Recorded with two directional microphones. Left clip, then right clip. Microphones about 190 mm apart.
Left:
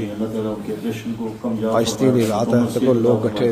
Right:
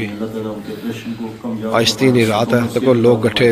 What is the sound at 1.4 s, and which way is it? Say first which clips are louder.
Speech: left 1 dB; 40° left (ahead or behind).